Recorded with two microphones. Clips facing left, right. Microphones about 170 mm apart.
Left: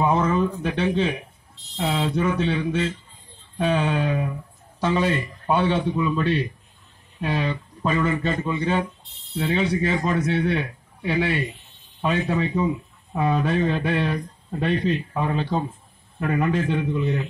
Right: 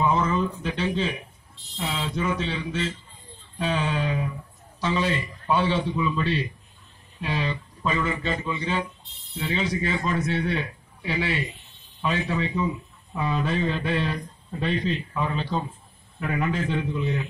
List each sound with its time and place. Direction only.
0.0 s a man's voice: 55° left (ahead or behind)
16.2 s a man's voice: 45° left (ahead or behind)
16.4 s speech: 55° left (ahead or behind)